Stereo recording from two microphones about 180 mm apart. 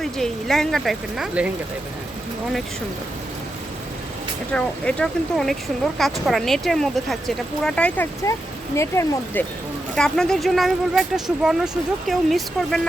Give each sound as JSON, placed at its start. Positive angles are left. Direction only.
{"t": 0.0, "sound": "speech", "side_deg": 0}
{"t": 4.5, "sound": "speech", "side_deg": 5}